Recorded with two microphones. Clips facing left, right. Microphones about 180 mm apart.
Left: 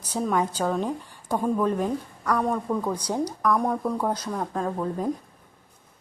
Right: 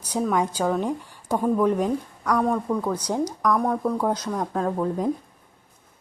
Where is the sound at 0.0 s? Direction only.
5° right (ahead or behind).